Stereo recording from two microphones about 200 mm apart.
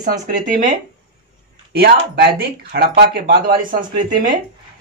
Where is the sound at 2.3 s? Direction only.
55° right (ahead or behind).